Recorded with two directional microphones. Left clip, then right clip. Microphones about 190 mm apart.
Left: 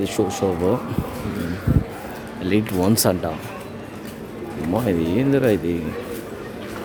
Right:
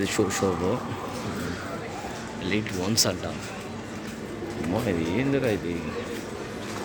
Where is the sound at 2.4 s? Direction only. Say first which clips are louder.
Left 8 dB; 50° left (ahead or behind).